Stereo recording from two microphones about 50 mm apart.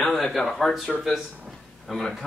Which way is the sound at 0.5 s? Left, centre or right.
Centre.